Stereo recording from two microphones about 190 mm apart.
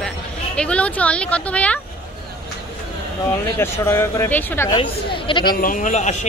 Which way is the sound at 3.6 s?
15° left (ahead or behind).